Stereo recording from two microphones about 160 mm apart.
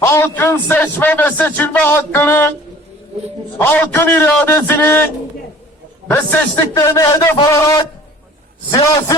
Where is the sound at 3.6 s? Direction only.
10° left (ahead or behind).